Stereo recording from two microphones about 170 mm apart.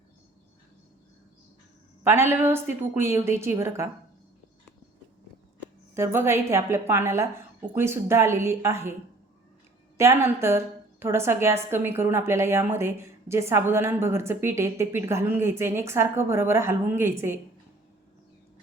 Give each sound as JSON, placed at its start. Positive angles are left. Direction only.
{"t": 2.0, "sound": "a woman's voice", "side_deg": -15}
{"t": 5.9, "sound": "a woman's voice", "side_deg": -15}
{"t": 10.0, "sound": "a woman's voice", "side_deg": -15}